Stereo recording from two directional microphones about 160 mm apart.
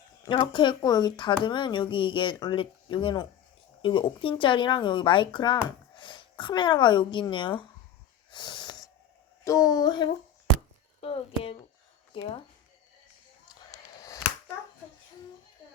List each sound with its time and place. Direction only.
0.3 s speech: 30° left (ahead or behind)
8.3 s snort: 30° left (ahead or behind)
9.4 s speech: 20° left (ahead or behind)
11.0 s speech: 35° left (ahead or behind)
13.7 s chop: 20° left (ahead or behind)